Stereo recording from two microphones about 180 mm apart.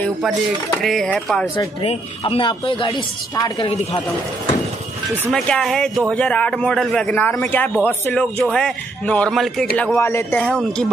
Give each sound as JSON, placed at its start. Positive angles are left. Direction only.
{"t": 0.8, "sound": "a man's voice", "side_deg": 5}
{"t": 1.8, "sound": "speech", "side_deg": 30}
{"t": 5.3, "sound": "a man's voice", "side_deg": 5}